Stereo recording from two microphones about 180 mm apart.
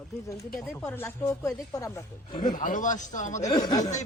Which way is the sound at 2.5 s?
45° left (ahead or behind).